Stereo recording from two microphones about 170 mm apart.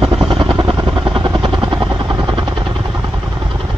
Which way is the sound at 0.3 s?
30° right (ahead or behind).